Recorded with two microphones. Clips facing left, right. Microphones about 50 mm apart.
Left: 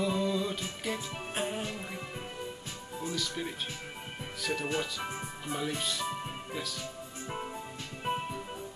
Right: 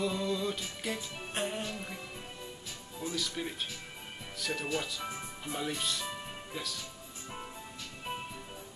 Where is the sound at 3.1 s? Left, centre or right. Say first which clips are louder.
Right 1 dB; centre.